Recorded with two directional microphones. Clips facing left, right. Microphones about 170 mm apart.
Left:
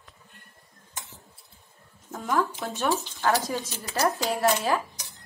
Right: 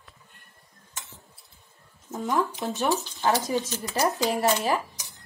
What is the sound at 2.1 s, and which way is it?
Speech, 20° right (ahead or behind).